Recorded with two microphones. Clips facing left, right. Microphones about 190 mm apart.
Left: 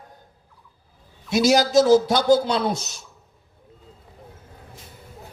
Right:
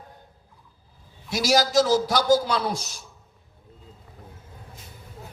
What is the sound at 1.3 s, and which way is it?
A man's voice, 20° left (ahead or behind).